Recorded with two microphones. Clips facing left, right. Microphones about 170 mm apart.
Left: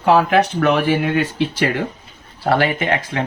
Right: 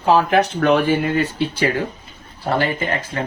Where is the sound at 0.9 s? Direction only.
90° left.